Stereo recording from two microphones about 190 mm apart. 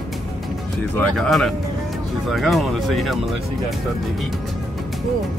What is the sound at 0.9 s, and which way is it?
Speech, 5° left (ahead or behind).